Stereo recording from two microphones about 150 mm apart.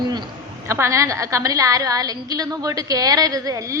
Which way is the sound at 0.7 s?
20° right (ahead or behind).